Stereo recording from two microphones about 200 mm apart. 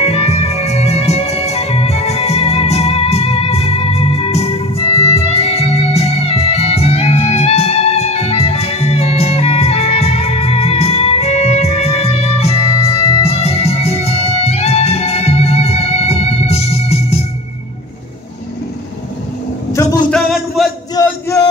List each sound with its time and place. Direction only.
0.0 s music: 30° left (ahead or behind)
19.7 s vehicle: 15° left (ahead or behind)
20.1 s music: centre (ahead or behind)
20.9 s male singing: 15° left (ahead or behind)